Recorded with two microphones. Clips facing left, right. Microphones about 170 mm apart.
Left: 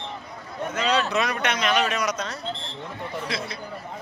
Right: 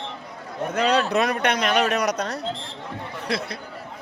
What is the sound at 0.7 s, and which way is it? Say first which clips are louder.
Speech: right 3 dB; 60° right (ahead or behind).